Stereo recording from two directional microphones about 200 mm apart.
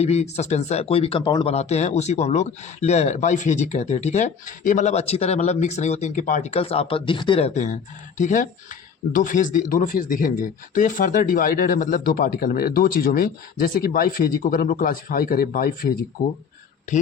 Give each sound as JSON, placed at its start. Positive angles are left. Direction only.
{"t": 0.0, "sound": "speech", "side_deg": 30}